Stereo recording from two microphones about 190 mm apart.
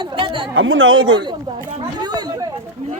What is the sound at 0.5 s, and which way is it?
Speech, 90° right.